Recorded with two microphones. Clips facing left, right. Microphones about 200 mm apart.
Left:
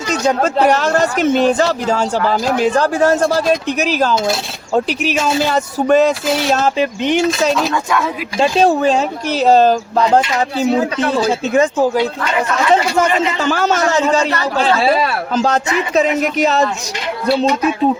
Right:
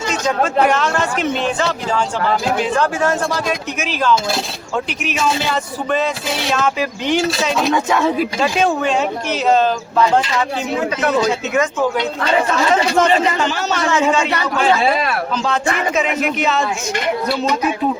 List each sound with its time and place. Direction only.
0.1 s speech: 35° left (ahead or behind)
6.7 s speech: 20° left (ahead or behind)
7.7 s speech: 25° right (ahead or behind)
8.4 s speech: 35° left (ahead or behind)
13.4 s speech: 50° left (ahead or behind)
16.0 s speech: 40° left (ahead or behind)